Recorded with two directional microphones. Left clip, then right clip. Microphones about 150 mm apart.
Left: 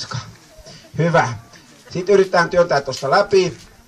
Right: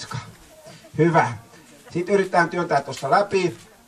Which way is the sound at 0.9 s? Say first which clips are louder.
Left 2 dB; 15° right (ahead or behind).